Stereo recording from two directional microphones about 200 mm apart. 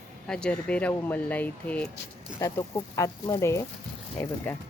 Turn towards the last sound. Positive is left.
turn(degrees=10)  # may be behind; listen again after turning